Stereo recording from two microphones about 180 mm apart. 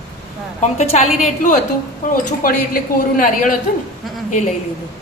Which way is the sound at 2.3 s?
55° left (ahead or behind).